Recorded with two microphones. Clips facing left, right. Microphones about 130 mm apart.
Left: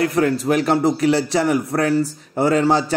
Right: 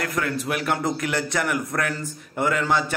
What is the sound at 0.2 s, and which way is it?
A man's voice, 40° left (ahead or behind).